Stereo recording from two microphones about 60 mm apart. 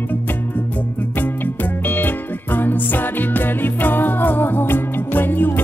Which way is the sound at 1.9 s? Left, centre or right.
Left.